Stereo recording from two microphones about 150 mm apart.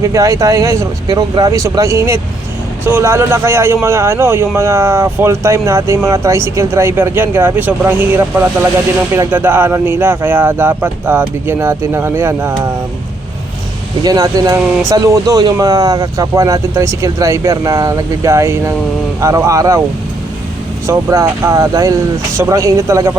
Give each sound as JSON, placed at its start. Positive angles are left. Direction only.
{"t": 0.0, "sound": "speech", "side_deg": -20}
{"t": 14.0, "sound": "speech", "side_deg": -25}
{"t": 20.8, "sound": "speech", "side_deg": -20}